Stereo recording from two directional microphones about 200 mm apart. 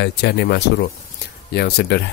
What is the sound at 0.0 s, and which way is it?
Speech, 55° left (ahead or behind).